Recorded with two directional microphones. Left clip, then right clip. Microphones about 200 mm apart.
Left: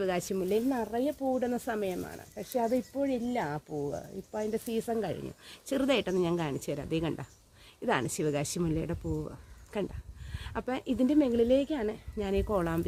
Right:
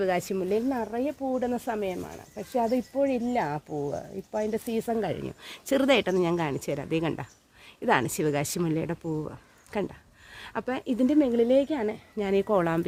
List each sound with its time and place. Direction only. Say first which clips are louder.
0.0 s speech: right 4 dB; 20° right (ahead or behind)